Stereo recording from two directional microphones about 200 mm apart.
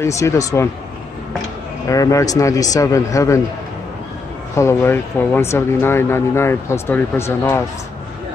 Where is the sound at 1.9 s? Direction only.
15° left (ahead or behind).